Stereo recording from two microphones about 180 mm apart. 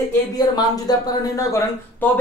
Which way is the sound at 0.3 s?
20° left (ahead or behind).